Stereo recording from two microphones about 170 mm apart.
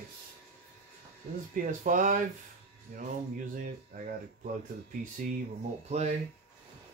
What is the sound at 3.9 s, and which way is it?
Speech, 50° right (ahead or behind).